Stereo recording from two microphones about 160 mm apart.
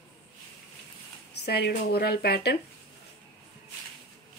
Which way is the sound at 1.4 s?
90° left.